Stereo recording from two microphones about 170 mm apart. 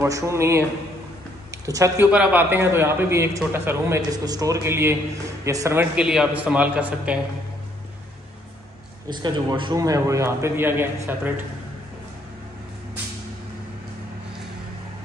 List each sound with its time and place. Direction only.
0.0 s a man's voice: 15° right (ahead or behind)
1.7 s a man's voice: 15° right (ahead or behind)
5.9 s a man's voice: 5° right (ahead or behind)
9.1 s a man's voice: 25° right (ahead or behind)